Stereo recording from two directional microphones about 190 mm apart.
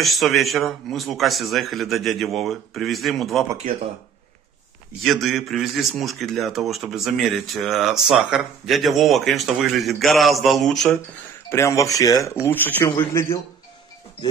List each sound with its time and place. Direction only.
0.0 s a man's voice: centre (ahead or behind)
5.0 s a man's voice: centre (ahead or behind)
11.4 s speech: 15° left (ahead or behind)